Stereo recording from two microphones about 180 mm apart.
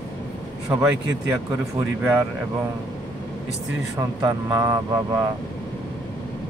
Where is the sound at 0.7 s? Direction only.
15° right (ahead or behind).